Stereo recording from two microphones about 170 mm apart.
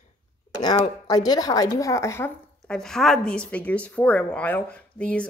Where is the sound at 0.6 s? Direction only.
25° left (ahead or behind).